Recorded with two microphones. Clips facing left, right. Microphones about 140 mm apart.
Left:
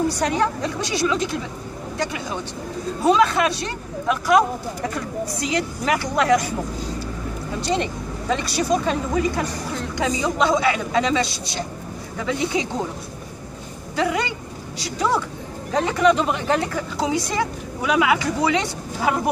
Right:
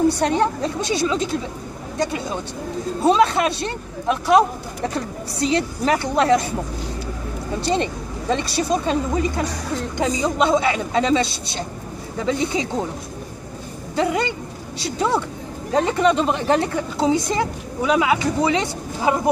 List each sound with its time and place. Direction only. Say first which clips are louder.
0.2 s speech: right 2 dB; 25° right (ahead or behind)
7.6 s speech: right 2 dB; 25° right (ahead or behind)
13.9 s speech: right 2 dB; 25° right (ahead or behind)